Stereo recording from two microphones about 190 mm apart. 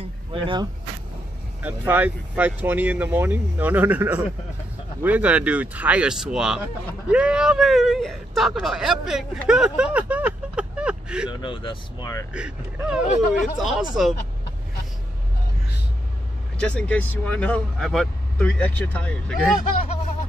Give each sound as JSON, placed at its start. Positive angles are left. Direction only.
{"t": 0.0, "sound": "vehicle", "side_deg": -25}
{"t": 1.6, "sound": "speech", "side_deg": -10}
{"t": 11.4, "sound": "speech", "side_deg": 25}
{"t": 12.4, "sound": "speech", "side_deg": -5}
{"t": 16.5, "sound": "speech", "side_deg": 5}